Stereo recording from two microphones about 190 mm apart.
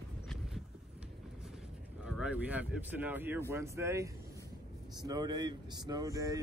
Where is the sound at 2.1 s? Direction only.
5° right (ahead or behind).